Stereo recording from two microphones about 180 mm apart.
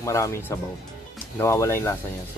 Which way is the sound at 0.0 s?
15° left (ahead or behind).